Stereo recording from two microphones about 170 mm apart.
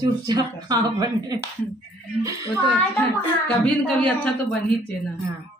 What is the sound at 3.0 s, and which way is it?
A child's voice, 5° left (ahead or behind).